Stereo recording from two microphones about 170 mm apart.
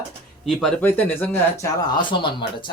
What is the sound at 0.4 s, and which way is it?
Speech, 5° left (ahead or behind).